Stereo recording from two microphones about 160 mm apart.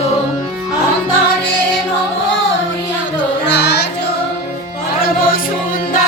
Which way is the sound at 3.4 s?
90° left.